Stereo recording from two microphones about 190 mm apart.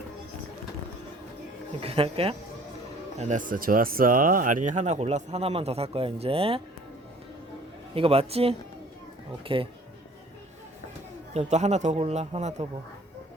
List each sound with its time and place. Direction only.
1.8 s speech: 30° right (ahead or behind)
7.9 s speech: 30° right (ahead or behind)
11.3 s speech: 35° right (ahead or behind)